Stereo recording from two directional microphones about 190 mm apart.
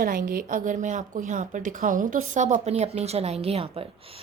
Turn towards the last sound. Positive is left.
turn(degrees=-30)  # may be behind; listen again after turning